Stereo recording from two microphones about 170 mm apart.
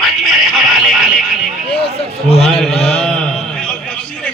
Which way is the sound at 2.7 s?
40° left (ahead or behind).